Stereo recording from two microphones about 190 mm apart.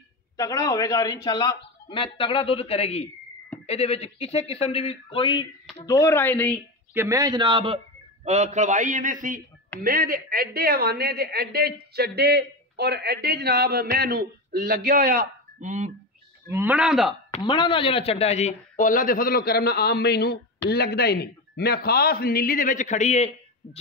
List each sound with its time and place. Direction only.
0.4 s speech: 20° left (ahead or behind)
5.9 s speech: 15° left (ahead or behind)
6.9 s a man's voice: 15° right (ahead or behind); by 15.9 s 40° right (ahead or behind)
16.4 s a man's voice: 10° right (ahead or behind)
17.3 s speech: 25° left (ahead or behind)